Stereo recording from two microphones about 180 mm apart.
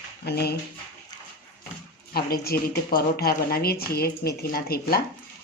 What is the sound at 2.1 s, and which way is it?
Speech, 60° left (ahead or behind).